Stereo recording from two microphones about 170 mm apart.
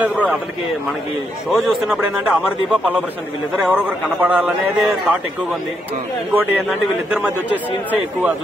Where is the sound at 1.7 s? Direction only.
5° right (ahead or behind).